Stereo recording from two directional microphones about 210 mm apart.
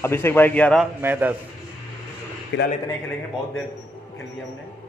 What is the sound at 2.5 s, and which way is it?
Speech, 60° left (ahead or behind).